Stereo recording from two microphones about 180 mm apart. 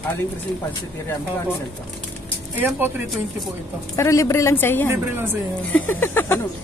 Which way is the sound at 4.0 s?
15° left (ahead or behind).